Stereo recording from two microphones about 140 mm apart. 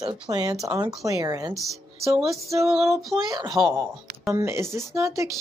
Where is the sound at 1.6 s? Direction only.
Centre (ahead or behind).